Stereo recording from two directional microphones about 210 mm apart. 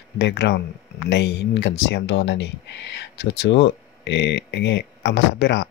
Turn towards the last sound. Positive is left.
turn(degrees=55)  # may be behind; listen again after turning